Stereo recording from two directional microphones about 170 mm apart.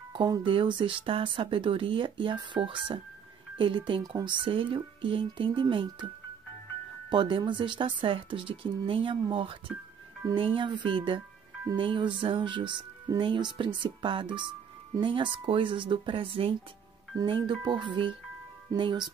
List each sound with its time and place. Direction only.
0.1 s speech: 25° right (ahead or behind)
7.1 s speech: 30° right (ahead or behind)